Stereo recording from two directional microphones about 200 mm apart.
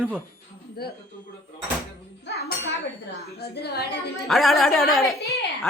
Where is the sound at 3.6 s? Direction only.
55° left (ahead or behind).